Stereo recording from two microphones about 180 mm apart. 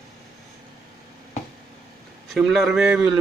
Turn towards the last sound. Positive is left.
turn(degrees=-5)  # may be behind; listen again after turning